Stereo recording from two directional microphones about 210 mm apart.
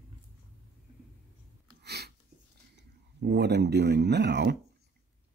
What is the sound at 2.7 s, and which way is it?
Speech, 55° right (ahead or behind).